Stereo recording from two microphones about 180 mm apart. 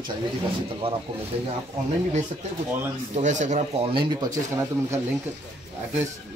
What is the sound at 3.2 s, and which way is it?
Speech, 40° right (ahead or behind).